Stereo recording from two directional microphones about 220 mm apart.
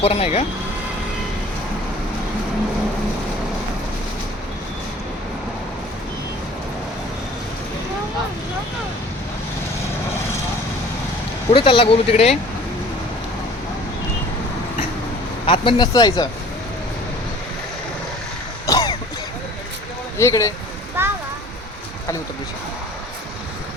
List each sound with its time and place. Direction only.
0.0 s speech: 25° left (ahead or behind)
11.5 s speech: 25° left (ahead or behind)
15.4 s speech: 25° left (ahead or behind)
18.6 s cough: 15° left (ahead or behind)
20.1 s speech: 15° left (ahead or behind)
21.0 s a sound: 10° right (ahead or behind)